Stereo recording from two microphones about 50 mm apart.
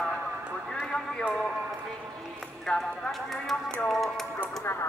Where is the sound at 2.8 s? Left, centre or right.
Centre.